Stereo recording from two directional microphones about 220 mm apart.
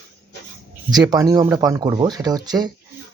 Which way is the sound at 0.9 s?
15° right (ahead or behind).